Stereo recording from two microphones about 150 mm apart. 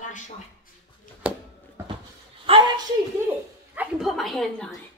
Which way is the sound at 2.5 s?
40° right (ahead or behind).